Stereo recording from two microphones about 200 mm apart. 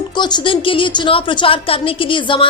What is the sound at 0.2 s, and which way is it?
A woman's voice, 20° left (ahead or behind).